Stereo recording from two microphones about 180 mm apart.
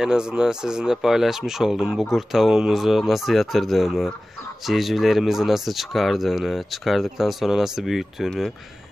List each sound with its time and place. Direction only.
0.0 s speech: 5° right (ahead or behind)